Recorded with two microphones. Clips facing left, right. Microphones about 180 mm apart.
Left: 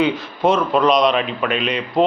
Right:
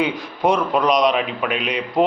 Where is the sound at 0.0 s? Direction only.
15° right (ahead or behind).